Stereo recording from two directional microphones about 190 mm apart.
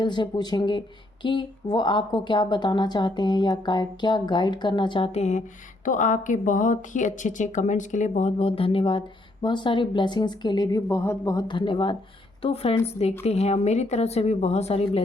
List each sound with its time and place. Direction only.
0.0 s speech: 25° left (ahead or behind)